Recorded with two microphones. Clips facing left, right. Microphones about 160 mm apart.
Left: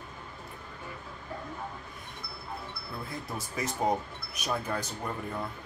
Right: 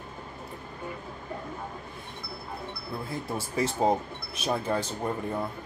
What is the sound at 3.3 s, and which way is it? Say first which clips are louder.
Speech: right 7 dB; 30° right (ahead or behind).